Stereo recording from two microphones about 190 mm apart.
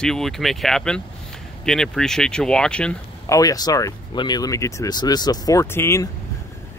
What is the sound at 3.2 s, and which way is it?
Speech, 15° left (ahead or behind).